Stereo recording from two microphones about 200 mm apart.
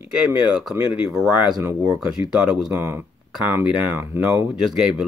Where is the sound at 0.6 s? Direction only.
Centre (ahead or behind).